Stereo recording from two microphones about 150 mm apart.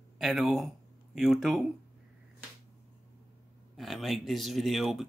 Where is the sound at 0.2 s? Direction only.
Centre (ahead or behind).